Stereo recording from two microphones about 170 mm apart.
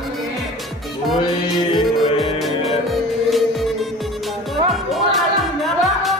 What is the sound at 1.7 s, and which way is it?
Music, 30° left (ahead or behind).